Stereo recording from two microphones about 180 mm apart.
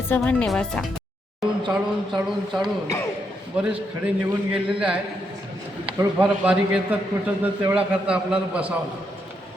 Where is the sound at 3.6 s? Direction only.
5° right (ahead or behind).